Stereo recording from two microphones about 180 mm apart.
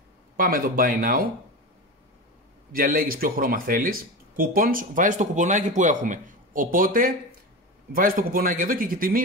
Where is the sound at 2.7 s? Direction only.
55° right (ahead or behind).